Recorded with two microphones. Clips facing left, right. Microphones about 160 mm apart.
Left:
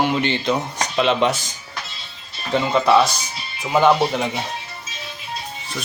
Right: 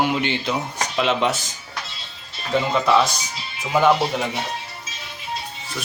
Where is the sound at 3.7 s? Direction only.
Centre (ahead or behind).